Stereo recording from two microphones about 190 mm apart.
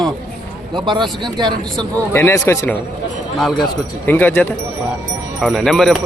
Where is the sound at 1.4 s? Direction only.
20° right (ahead or behind).